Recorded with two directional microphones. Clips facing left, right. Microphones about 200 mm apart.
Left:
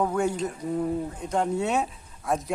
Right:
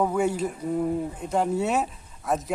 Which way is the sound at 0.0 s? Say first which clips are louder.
Right 1 dB; 5° right (ahead or behind).